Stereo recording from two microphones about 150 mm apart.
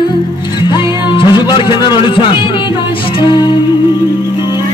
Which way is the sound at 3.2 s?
30° left (ahead or behind).